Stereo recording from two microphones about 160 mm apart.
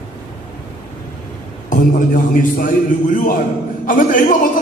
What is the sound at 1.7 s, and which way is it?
A man's voice, 55° left (ahead or behind).